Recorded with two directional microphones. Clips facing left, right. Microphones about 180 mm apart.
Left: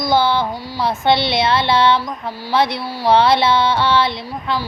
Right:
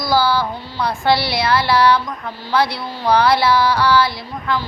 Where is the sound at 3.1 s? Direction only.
25° left (ahead or behind).